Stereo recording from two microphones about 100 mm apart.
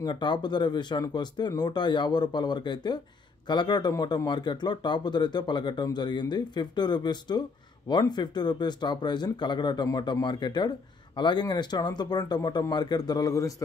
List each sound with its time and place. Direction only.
0.0 s speech: 50° left (ahead or behind)